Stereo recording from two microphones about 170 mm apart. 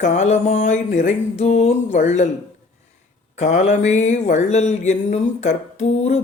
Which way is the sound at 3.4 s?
40° left (ahead or behind).